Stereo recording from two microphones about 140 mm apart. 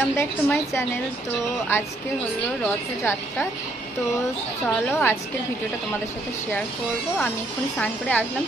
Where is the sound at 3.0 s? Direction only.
20° left (ahead or behind).